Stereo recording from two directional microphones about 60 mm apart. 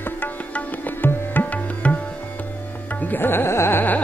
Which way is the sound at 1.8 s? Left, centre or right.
Left.